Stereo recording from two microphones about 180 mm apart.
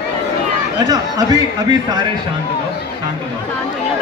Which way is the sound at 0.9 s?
20° right (ahead or behind).